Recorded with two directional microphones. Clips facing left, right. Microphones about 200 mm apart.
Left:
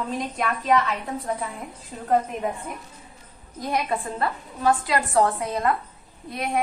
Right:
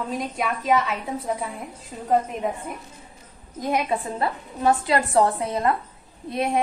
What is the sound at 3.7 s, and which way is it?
A woman's voice, 15° right (ahead or behind).